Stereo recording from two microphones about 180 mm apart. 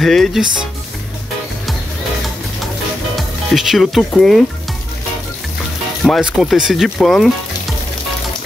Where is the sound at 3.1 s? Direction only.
Centre (ahead or behind).